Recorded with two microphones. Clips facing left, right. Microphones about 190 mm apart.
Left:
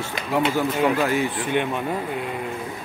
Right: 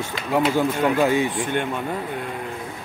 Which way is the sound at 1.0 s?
20° right (ahead or behind).